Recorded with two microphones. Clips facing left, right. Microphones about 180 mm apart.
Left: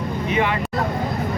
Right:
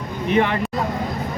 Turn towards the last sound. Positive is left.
turn(degrees=-55)  # may be behind; listen again after turning